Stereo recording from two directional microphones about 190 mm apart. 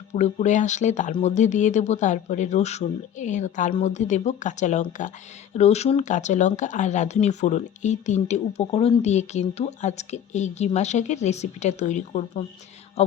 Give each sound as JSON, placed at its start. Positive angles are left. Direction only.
{"t": 0.1, "sound": "speech", "side_deg": 40}